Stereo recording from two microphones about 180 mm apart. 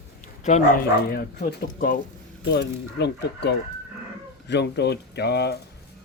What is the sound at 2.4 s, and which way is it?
Speech, 75° left (ahead or behind).